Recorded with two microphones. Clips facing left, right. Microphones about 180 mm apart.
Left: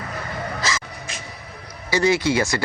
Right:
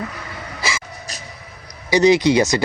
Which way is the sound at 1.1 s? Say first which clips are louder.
Even; 40° right (ahead or behind).